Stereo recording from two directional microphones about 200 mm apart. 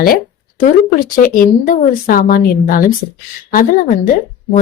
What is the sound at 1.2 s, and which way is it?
Speech, 45° left (ahead or behind).